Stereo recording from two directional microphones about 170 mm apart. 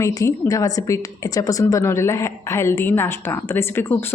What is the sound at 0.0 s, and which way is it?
A woman's voice, 20° left (ahead or behind).